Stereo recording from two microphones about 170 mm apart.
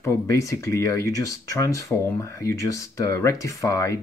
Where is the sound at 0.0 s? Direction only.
15° left (ahead or behind).